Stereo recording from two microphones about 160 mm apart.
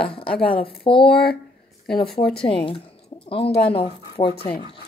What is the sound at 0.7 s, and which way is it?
Speech, 35° left (ahead or behind).